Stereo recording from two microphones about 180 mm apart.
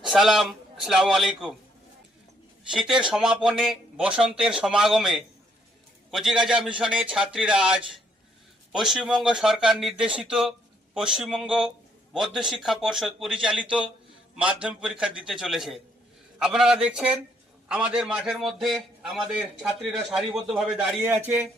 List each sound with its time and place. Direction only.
0.0 s a man's voice: centre (ahead or behind)
2.6 s speech: 5° right (ahead or behind)